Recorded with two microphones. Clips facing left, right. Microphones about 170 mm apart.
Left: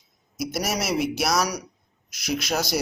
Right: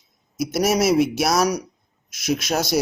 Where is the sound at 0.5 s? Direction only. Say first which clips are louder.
Right 8 dB; 50° right (ahead or behind).